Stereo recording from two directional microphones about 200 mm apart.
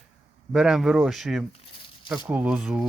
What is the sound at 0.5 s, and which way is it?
Speech, 5° right (ahead or behind).